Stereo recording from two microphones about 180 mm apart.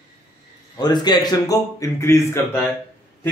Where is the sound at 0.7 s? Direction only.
25° left (ahead or behind).